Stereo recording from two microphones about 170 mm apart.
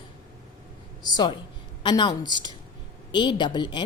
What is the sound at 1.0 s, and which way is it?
A woman's voice, 25° left (ahead or behind).